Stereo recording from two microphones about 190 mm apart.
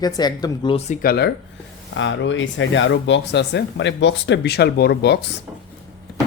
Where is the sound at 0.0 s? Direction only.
20° left (ahead or behind).